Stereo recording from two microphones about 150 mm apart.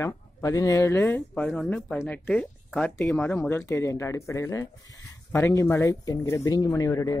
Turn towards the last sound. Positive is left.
turn(degrees=25)  # may be behind; listen again after turning